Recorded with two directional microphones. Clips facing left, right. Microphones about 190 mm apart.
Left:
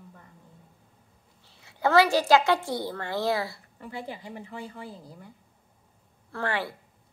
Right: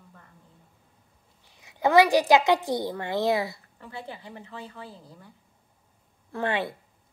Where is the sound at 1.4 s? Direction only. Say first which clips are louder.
Right 2 dB; 15° right (ahead or behind).